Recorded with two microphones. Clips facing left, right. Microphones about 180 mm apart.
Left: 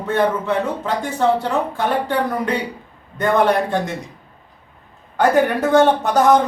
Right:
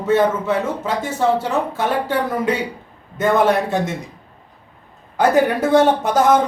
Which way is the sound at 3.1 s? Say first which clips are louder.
Even; 5° right (ahead or behind).